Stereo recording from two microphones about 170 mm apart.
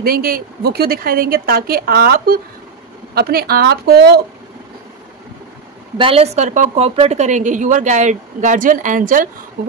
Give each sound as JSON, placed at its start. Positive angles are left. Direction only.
{"t": 0.0, "sound": "a woman's voice", "side_deg": -60}
{"t": 5.9, "sound": "a woman's voice", "side_deg": -35}